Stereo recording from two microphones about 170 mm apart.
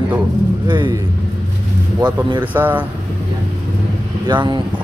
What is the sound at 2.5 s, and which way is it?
Speech, 10° right (ahead or behind).